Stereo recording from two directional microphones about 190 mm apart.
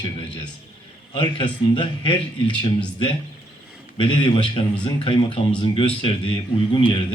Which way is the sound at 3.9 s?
25° left (ahead or behind).